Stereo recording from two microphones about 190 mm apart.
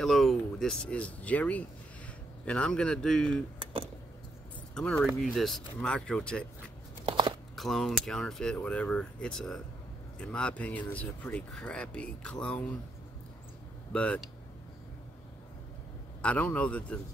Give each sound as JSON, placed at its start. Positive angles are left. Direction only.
{"t": 0.0, "sound": "speech", "side_deg": 0}
{"t": 4.7, "sound": "speech", "side_deg": 5}
{"t": 7.1, "sound": "a sound", "side_deg": -25}
{"t": 7.5, "sound": "speech", "side_deg": 0}
{"t": 13.9, "sound": "a man's voice", "side_deg": 5}
{"t": 16.2, "sound": "a man's voice", "side_deg": 5}